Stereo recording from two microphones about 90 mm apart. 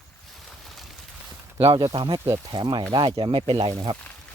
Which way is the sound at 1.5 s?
90° right.